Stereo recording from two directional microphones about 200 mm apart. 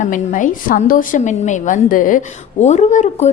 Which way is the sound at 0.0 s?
40° left (ahead or behind).